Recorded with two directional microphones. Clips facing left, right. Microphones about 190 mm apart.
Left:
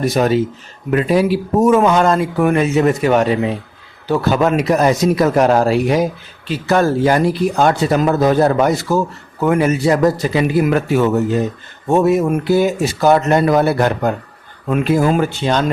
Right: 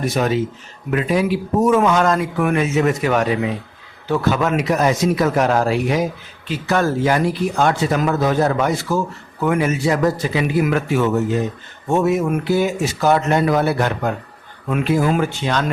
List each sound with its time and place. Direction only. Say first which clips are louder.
0.0 s speech: left 4 dB; 40° left (ahead or behind)